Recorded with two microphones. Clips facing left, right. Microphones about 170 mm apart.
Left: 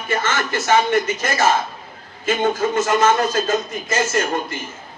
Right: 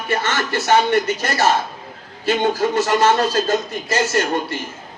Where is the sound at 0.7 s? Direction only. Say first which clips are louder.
Right 1 dB; 35° right (ahead or behind).